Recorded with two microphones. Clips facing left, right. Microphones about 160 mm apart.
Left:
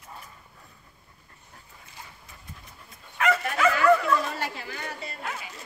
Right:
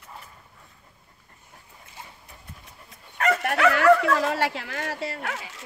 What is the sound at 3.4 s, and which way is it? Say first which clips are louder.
Speech: right 5 dB; 70° right (ahead or behind).